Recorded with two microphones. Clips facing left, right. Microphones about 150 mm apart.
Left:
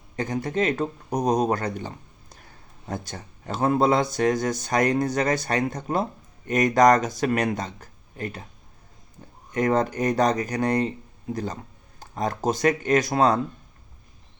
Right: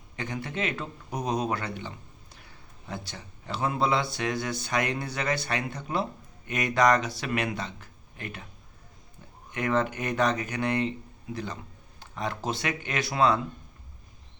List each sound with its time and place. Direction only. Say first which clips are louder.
0.2 s a man's voice: left 7 dB; 40° left (ahead or behind)
9.5 s a man's voice: left 5 dB; 40° left (ahead or behind)